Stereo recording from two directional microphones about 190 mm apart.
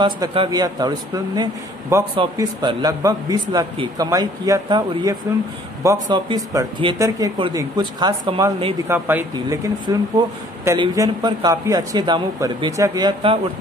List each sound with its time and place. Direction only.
0.0 s speech: 25° right (ahead or behind)
8.8 s speech: 10° right (ahead or behind)